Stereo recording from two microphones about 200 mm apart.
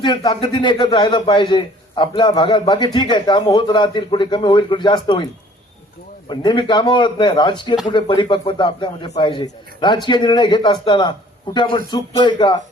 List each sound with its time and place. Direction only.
0.0 s a man's voice: 25° left (ahead or behind)